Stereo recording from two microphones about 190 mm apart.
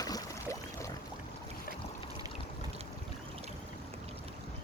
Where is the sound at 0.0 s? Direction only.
15° left (ahead or behind).